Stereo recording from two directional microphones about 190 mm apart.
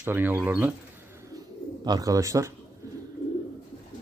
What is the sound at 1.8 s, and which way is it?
Speech, 20° right (ahead or behind).